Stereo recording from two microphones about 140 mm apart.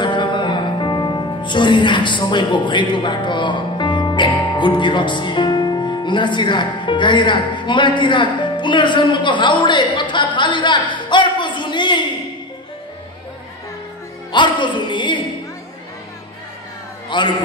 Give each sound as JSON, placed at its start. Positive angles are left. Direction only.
{"t": 0.0, "sound": "music", "side_deg": 35}
{"t": 14.3, "sound": "a sound", "side_deg": 35}
{"t": 17.1, "sound": "a man's voice", "side_deg": 35}